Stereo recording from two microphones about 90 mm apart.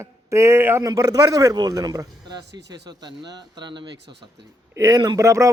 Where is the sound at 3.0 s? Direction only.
55° right (ahead or behind).